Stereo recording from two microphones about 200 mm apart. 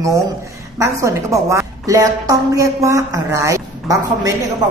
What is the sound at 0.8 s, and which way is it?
A woman's voice, 15° right (ahead or behind).